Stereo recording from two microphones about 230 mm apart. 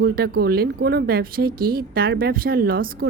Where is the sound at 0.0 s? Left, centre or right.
Right.